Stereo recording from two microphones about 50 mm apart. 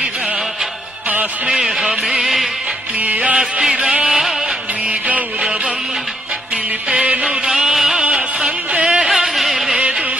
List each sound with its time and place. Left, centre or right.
1.5 s speech: centre
3.0 s music: right
7.4 s music: centre
8.1 s a sound: centre
9.7 s music: right